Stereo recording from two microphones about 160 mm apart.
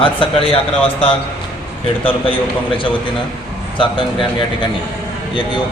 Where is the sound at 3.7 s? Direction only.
30° left (ahead or behind).